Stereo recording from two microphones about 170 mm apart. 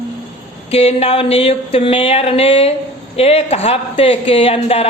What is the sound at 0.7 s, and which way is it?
A woman's voice, 35° left (ahead or behind).